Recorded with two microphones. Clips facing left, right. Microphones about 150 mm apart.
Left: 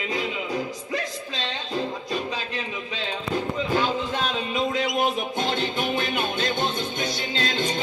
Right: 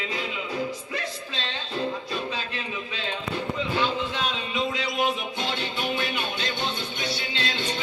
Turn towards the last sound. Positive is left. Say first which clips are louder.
# left 4 dB
turn(degrees=45)  # may be behind; listen again after turning